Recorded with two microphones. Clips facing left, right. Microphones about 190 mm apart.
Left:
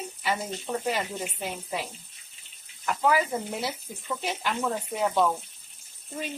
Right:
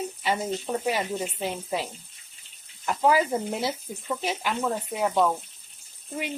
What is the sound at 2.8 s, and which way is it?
Speech, 30° right (ahead or behind).